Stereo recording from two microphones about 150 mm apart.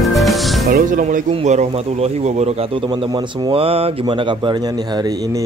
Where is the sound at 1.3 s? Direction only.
50° right (ahead or behind).